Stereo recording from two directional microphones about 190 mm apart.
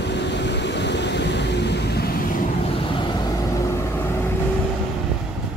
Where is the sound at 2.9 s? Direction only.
25° left (ahead or behind).